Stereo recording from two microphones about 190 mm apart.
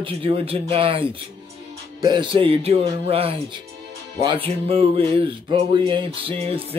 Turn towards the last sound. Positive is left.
turn(degrees=-30)  # may be behind; listen again after turning